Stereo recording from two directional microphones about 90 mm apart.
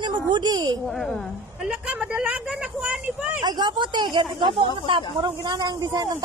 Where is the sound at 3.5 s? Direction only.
55° right (ahead or behind).